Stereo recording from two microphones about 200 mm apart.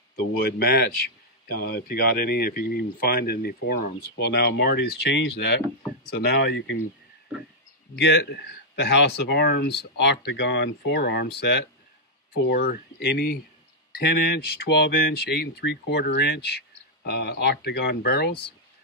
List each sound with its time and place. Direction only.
0.1 s speech: 50° left (ahead or behind)
7.9 s speech: 60° left (ahead or behind)